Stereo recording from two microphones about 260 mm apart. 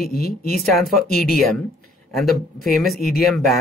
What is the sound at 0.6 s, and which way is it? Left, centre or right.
Speech, centre.